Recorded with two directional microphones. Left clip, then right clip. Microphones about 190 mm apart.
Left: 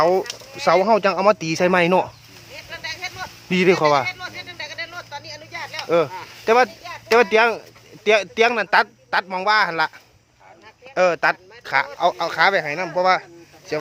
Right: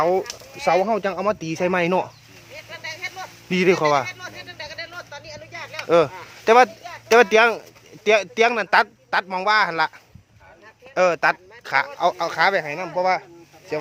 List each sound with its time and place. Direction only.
0.0 s speech: 10° left (ahead or behind)
2.6 s vehicle: 55° left (ahead or behind)
3.5 s a man's voice: centre (ahead or behind)
4.1 s a sound: 50° left (ahead or behind)
5.9 s a man's voice: 15° right (ahead or behind)
10.9 s a man's voice: 5° right (ahead or behind)
13.0 s speech: 10° left (ahead or behind)